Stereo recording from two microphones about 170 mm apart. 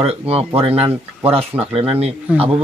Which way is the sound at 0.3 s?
35° right (ahead or behind).